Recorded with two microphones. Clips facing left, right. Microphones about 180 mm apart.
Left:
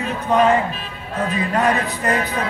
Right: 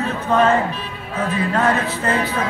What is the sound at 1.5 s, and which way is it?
Speech, 15° left (ahead or behind).